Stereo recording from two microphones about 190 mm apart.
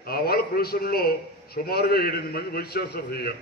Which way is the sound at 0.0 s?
55° left (ahead or behind).